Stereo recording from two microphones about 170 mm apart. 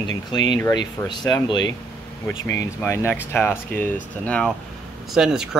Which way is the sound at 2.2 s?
15° left (ahead or behind).